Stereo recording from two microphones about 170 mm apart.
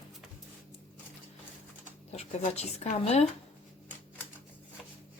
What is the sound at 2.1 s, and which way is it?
Speech, 40° left (ahead or behind).